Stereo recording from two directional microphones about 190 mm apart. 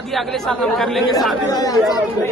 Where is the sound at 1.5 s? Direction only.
20° left (ahead or behind).